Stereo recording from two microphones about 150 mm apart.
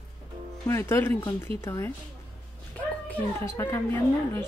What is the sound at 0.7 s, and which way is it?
Speech, 15° left (ahead or behind).